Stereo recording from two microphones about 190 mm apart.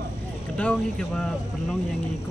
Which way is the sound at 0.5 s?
5° left (ahead or behind).